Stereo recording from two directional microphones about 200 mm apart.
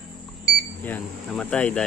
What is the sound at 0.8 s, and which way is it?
Speech, 10° left (ahead or behind).